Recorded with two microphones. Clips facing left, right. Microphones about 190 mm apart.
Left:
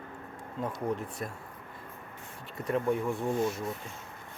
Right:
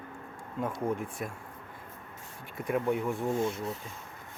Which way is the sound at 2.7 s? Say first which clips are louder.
Even; 5° right (ahead or behind).